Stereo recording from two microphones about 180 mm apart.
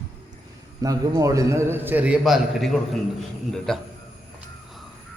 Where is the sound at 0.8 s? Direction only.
20° right (ahead or behind); by 3.8 s centre (ahead or behind).